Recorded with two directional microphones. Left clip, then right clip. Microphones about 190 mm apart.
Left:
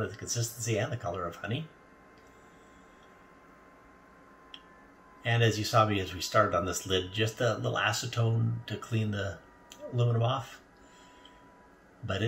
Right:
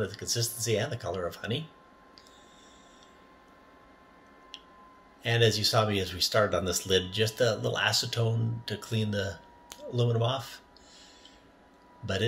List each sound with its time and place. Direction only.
0.1 s speech: 15° right (ahead or behind)
5.2 s speech: 15° right (ahead or behind)